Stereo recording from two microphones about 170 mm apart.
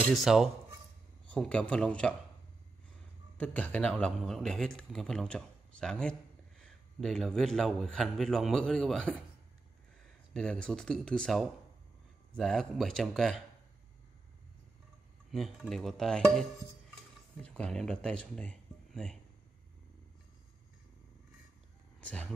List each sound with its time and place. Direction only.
0.1 s a man's voice: centre (ahead or behind)
3.3 s a man's voice: 10° left (ahead or behind)
10.3 s a man's voice: 5° left (ahead or behind)
15.3 s a man's voice: centre (ahead or behind)
22.0 s speech: 10° left (ahead or behind)